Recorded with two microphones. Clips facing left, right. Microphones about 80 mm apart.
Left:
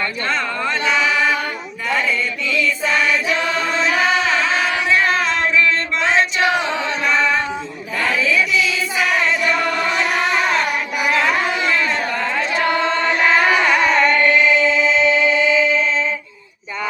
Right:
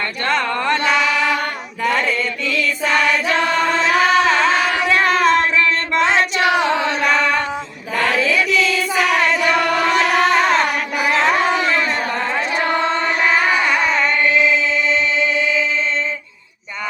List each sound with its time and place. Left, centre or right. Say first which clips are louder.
0.3 s singing: right 6 dB; right
7.9 s chant: right 1 dB; right
11.1 s a sound: right 3 dB; right
12.4 s chant: left 1 dB; centre
13.4 s music: left 2 dB; centre